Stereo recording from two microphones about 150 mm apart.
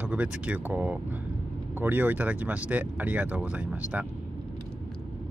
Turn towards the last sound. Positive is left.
turn(degrees=-10)  # may be behind; listen again after turning